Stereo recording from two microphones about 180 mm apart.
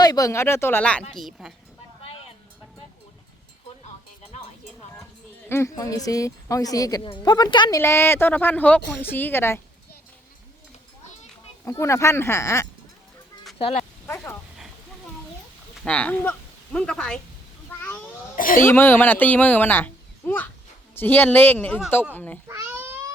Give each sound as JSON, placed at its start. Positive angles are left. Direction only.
{"t": 0.0, "sound": "a woman's voice", "side_deg": 20}
{"t": 5.5, "sound": "a woman's voice", "side_deg": 15}
{"t": 7.8, "sound": "a woman's voice", "side_deg": 15}
{"t": 11.6, "sound": "a woman's voice", "side_deg": 15}
{"t": 15.8, "sound": "a woman's voice", "side_deg": 5}
{"t": 18.3, "sound": "speech", "side_deg": 50}
{"t": 18.6, "sound": "a woman's voice", "side_deg": 15}
{"t": 22.4, "sound": "babbling", "side_deg": -15}